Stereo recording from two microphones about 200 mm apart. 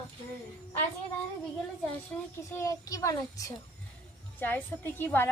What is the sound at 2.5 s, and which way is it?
Speech, 15° left (ahead or behind).